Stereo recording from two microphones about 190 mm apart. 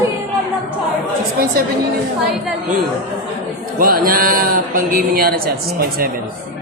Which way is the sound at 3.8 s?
50° right (ahead or behind).